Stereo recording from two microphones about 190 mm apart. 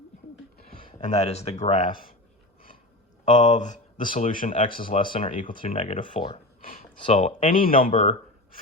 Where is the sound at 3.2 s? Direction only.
40° left (ahead or behind).